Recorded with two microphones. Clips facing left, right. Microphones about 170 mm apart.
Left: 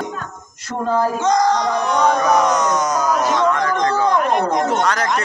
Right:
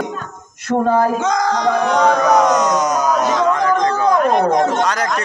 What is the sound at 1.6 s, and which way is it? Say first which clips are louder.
Speech: right 3 dB; 70° right (ahead or behind).